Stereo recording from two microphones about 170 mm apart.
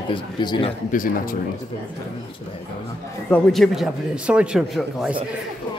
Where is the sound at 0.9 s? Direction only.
55° left (ahead or behind).